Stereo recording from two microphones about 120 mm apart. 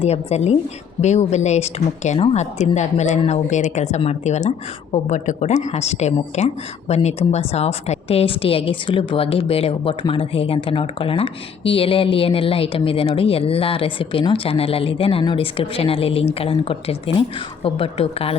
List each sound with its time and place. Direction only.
0.0 s a woman's voice: 65° left (ahead or behind)
2.4 s a woman's voice: 75° left (ahead or behind); by 18.3 s 55° left (ahead or behind)